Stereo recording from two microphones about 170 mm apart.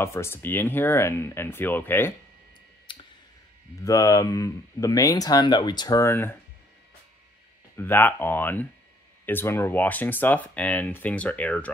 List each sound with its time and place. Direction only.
0.0 s speech: 15° left (ahead or behind)
2.9 s clicking: 30° left (ahead or behind)
3.8 s speech: 20° left (ahead or behind)
7.7 s speech: 10° left (ahead or behind)